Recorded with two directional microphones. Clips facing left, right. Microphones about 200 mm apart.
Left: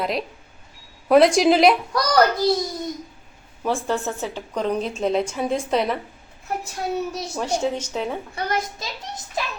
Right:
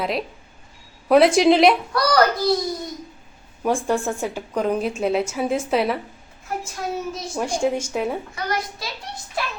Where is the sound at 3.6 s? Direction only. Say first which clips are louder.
Right 2 dB; 10° right (ahead or behind).